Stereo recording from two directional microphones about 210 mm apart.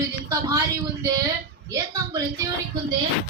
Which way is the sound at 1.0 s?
15° right (ahead or behind).